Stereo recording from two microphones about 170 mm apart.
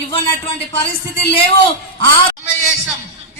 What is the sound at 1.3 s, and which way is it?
Speech, 30° left (ahead or behind).